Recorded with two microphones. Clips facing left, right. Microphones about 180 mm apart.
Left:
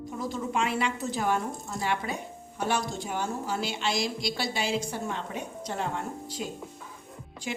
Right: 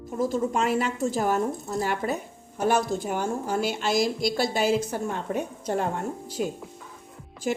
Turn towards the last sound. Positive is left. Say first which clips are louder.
# right 7 dB
turn(degrees=-45)  # may be behind; listen again after turning